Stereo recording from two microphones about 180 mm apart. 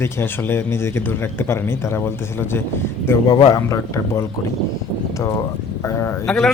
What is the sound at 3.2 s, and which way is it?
A man's voice, 25° left (ahead or behind).